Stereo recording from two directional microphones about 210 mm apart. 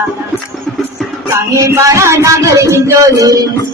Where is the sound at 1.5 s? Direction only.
15° right (ahead or behind).